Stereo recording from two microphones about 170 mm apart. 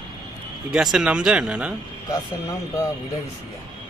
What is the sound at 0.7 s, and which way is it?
Speech, 5° right (ahead or behind).